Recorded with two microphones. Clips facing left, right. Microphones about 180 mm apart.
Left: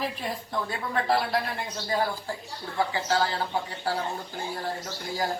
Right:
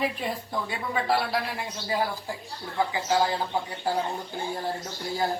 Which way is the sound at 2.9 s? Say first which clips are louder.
Right 4 dB; 15° right (ahead or behind).